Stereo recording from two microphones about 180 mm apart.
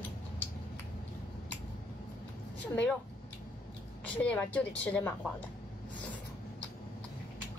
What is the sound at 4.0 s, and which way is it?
A woman's voice, 10° left (ahead or behind).